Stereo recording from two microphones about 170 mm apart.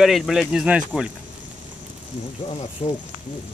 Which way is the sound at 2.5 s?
35° left (ahead or behind).